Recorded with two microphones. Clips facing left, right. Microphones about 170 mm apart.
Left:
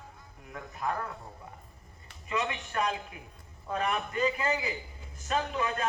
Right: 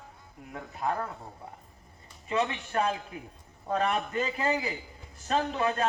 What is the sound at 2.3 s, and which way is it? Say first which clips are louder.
A man's voice: right 4 dB; 35° right (ahead or behind).